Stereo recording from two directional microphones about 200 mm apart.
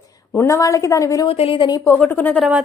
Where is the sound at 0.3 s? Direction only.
15° left (ahead or behind).